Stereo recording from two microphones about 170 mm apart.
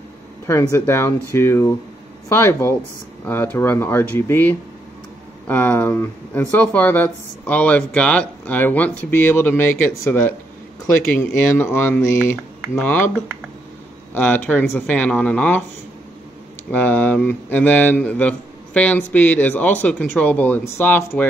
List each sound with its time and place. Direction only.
0.5 s speech: 15° left (ahead or behind)
14.1 s speech: 10° left (ahead or behind)
16.7 s speech: 10° left (ahead or behind)